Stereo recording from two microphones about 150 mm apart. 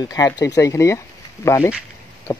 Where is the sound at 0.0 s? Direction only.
25° left (ahead or behind).